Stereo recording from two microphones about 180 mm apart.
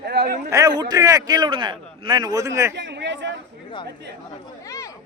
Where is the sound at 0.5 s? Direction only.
20° right (ahead or behind).